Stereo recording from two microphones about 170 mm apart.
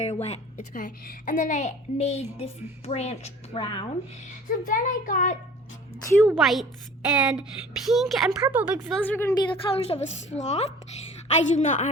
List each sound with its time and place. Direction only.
0.0 s a child's voice: 40° left (ahead or behind)
4.4 s a child's voice: 55° left (ahead or behind)
6.3 s a woman's voice: centre (ahead or behind)
8.9 s a woman's voice: 10° left (ahead or behind)
9.5 s a woman's voice: 35° left (ahead or behind)